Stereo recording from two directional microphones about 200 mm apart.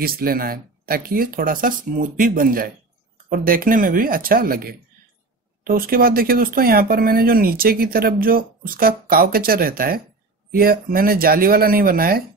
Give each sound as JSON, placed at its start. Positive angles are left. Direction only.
{"t": 0.0, "sound": "speech", "side_deg": -50}